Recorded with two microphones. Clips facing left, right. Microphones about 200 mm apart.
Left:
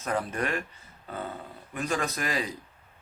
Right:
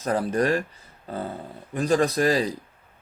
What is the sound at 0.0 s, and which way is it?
Speech, 35° right (ahead or behind).